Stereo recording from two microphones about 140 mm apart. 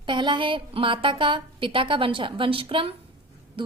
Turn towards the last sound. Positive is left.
turn(degrees=-40)  # may be behind; listen again after turning